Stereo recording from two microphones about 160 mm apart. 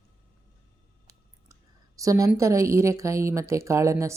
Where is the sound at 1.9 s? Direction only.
20° right (ahead or behind).